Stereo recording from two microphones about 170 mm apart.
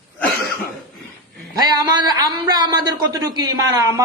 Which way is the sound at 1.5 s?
25° right (ahead or behind).